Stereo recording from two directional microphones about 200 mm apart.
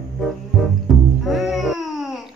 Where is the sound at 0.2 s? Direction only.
Centre (ahead or behind).